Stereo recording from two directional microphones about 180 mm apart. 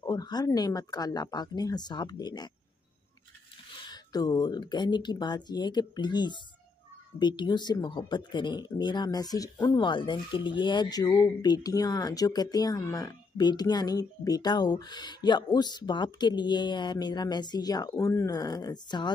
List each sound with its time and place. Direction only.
0.0 s speech: 20° left (ahead or behind)
3.8 s speech: 20° left (ahead or behind)